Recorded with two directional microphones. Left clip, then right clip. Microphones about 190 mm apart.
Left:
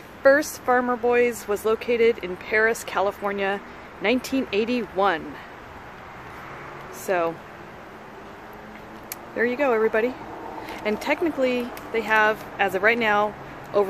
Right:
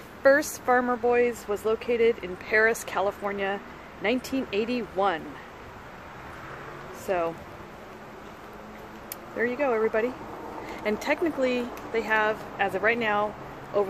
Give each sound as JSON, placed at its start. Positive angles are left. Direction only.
{"t": 0.2, "sound": "speech", "side_deg": 5}
{"t": 7.1, "sound": "speech", "side_deg": 15}
{"t": 9.4, "sound": "speech", "side_deg": 15}